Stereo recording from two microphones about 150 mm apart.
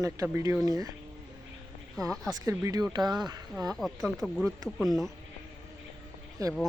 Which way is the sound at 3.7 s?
Centre (ahead or behind).